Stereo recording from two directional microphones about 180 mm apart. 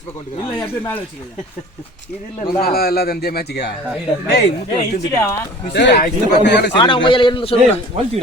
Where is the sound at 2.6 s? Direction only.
55° left (ahead or behind).